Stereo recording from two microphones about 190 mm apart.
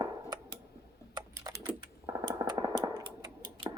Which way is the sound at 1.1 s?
20° right (ahead or behind).